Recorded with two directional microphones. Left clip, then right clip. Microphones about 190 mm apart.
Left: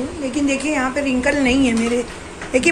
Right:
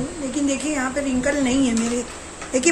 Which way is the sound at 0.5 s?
20° right (ahead or behind).